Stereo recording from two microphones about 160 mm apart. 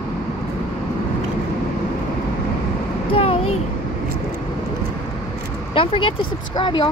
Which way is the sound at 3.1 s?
35° left (ahead or behind).